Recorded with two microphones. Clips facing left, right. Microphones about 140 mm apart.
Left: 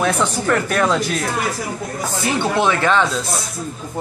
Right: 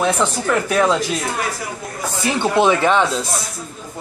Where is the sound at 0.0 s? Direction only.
5° right (ahead or behind).